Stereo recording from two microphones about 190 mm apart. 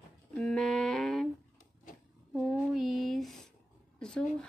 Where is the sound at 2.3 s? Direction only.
5° right (ahead or behind).